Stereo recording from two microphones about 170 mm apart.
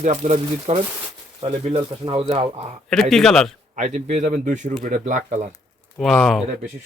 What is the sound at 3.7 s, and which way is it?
Speech, 50° right (ahead or behind).